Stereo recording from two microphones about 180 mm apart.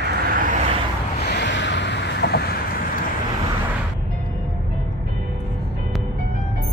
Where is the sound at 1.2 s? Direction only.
70° left (ahead or behind).